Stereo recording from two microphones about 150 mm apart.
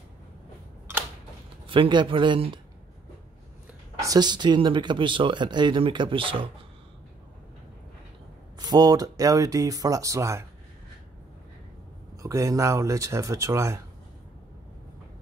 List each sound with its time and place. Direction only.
1.7 s speech: 35° right (ahead or behind)
4.0 s speech: 25° right (ahead or behind)
8.5 s speech: 25° right (ahead or behind)
12.2 s speech: 20° right (ahead or behind)